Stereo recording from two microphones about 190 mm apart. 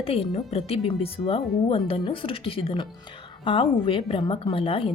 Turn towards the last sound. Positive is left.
turn(degrees=30)  # may be behind; listen again after turning